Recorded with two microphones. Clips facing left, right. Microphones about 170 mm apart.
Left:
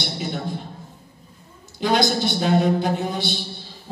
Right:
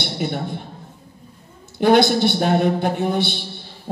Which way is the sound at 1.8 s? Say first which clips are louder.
Right 6 dB; 60° right (ahead or behind).